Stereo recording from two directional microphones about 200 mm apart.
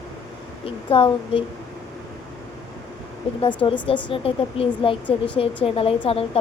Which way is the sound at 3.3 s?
25° left (ahead or behind).